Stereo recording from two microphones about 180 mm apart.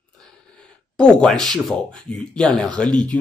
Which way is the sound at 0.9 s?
5° left (ahead or behind).